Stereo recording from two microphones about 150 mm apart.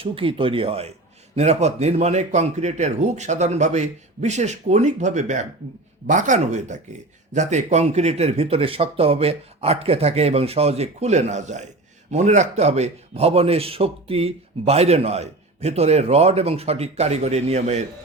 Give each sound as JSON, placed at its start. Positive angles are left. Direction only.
{"t": 0.0, "sound": "a man's voice", "side_deg": -35}